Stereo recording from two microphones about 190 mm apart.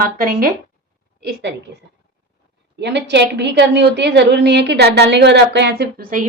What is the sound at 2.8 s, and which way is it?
A woman's voice, 65° right (ahead or behind).